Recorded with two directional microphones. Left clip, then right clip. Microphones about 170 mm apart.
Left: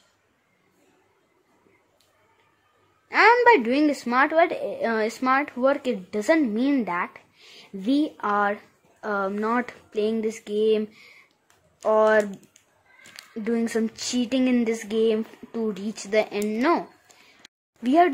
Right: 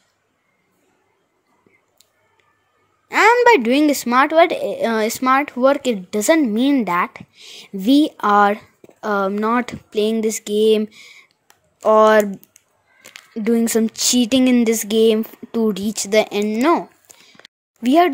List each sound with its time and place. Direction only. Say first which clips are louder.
3.1 s a woman's voice: right 4 dB; 45° right (ahead or behind)
13.3 s a woman's voice: right 8 dB; 40° right (ahead or behind)
16.4 s speech: right 6 dB; 30° right (ahead or behind)
17.8 s speech: right 5 dB; 40° right (ahead or behind)